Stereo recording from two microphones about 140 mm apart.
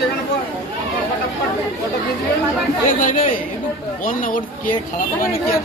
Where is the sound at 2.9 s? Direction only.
70° left (ahead or behind).